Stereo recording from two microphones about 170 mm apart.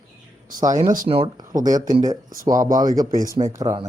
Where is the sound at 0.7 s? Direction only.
50° right (ahead or behind).